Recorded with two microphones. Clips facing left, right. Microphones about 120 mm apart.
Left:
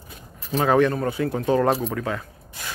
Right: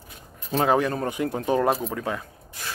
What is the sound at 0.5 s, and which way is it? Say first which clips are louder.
Speech: left 3 dB; 30° right (ahead or behind).